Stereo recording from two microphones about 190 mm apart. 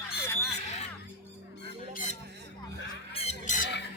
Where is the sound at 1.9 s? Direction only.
45° left (ahead or behind).